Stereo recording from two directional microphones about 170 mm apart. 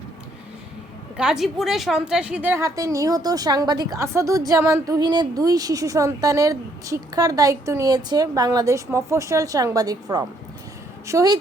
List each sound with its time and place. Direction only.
1.1 s a woman's voice: 5° right (ahead or behind); by 11.3 s 20° right (ahead or behind)